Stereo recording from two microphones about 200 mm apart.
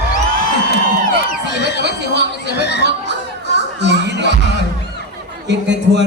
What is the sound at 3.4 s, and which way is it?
Music, 60° right (ahead or behind).